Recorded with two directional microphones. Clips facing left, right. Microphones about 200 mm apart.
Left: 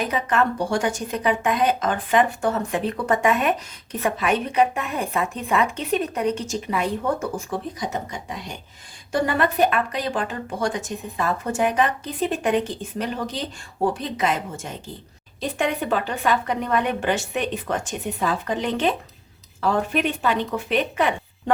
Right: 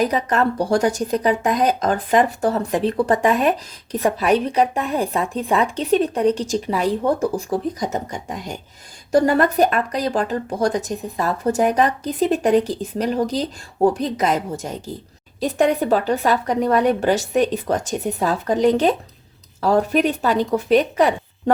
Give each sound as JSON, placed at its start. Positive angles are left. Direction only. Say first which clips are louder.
{"t": 0.0, "sound": "speech", "louder": "right 4 dB", "side_deg": -40}